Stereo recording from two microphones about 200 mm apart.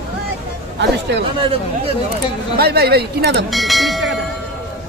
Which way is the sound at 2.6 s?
55° right (ahead or behind).